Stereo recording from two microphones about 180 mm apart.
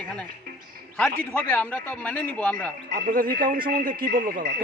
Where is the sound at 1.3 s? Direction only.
10° left (ahead or behind).